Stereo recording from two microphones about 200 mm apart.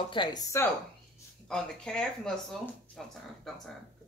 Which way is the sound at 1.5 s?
5° left (ahead or behind).